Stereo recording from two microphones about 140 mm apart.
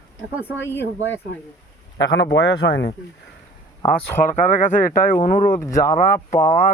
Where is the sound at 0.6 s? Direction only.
15° left (ahead or behind).